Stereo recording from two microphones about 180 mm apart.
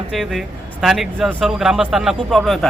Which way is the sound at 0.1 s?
Centre (ahead or behind).